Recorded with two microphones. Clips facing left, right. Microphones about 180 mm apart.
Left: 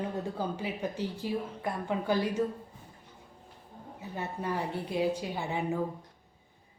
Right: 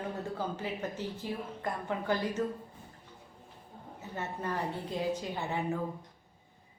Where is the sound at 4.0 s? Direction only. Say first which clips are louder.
Left 1 dB; 10° left (ahead or behind).